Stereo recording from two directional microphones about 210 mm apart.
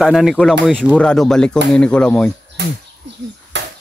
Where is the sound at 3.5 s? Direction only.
55° right (ahead or behind).